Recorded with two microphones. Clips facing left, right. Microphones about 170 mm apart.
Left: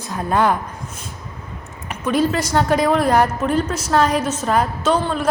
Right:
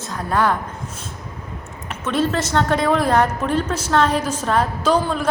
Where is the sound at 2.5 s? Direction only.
5° left (ahead or behind).